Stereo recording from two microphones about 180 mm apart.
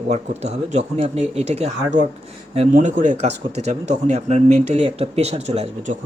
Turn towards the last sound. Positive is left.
turn(degrees=-40)  # may be behind; listen again after turning